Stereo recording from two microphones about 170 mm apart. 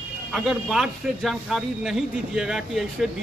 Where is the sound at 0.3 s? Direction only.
Centre (ahead or behind).